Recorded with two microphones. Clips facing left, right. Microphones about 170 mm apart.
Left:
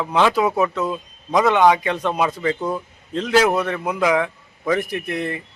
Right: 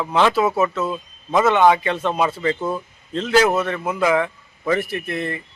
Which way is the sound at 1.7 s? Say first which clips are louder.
Even; 10° left (ahead or behind).